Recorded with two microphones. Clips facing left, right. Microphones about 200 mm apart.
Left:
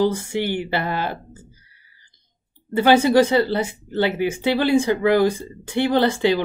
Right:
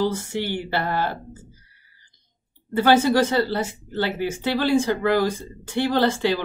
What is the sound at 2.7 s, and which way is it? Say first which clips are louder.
Speech: left 3 dB; 15° left (ahead or behind).